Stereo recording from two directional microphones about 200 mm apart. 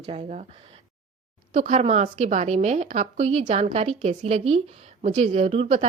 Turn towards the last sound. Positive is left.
turn(degrees=-30)  # may be behind; listen again after turning